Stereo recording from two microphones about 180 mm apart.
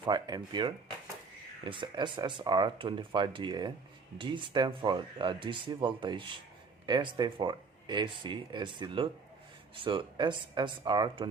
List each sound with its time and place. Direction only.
0.0 s speech: 25° right (ahead or behind)